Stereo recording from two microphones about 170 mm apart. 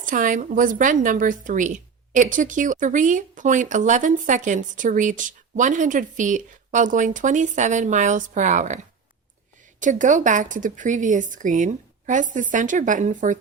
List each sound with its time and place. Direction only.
0.0 s a woman's voice: 50° right (ahead or behind)
9.8 s a woman's voice: 50° right (ahead or behind)